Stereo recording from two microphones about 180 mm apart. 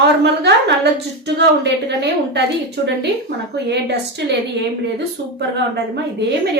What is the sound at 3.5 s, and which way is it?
A woman's voice, 70° right (ahead or behind).